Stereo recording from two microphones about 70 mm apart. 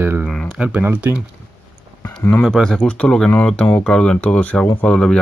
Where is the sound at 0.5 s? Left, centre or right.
Centre.